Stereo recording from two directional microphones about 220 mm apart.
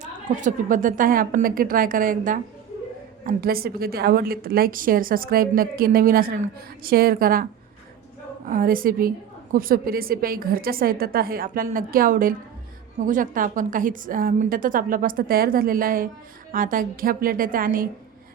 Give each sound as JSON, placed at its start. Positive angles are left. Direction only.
{"t": 0.0, "sound": "a woman's voice", "side_deg": -35}
{"t": 8.4, "sound": "a woman's voice", "side_deg": -40}